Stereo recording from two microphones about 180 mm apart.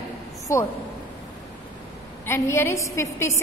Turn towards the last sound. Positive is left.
turn(degrees=15)  # may be behind; listen again after turning